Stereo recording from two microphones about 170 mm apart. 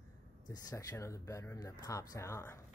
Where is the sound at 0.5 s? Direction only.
20° left (ahead or behind).